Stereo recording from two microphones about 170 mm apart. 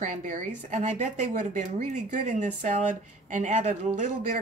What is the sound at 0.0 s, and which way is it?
A woman's voice, 50° right (ahead or behind).